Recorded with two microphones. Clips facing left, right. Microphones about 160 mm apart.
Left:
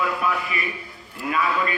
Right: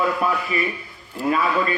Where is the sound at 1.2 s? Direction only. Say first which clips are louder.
Right 4 dB; 35° right (ahead or behind).